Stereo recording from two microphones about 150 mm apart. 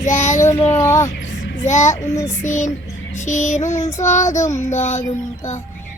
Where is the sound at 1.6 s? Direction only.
55° left (ahead or behind).